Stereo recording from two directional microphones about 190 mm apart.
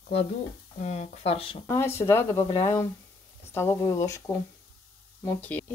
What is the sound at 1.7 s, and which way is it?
Speech, 15° left (ahead or behind).